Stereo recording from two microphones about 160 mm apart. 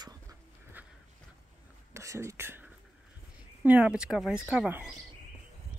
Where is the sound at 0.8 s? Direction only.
10° right (ahead or behind).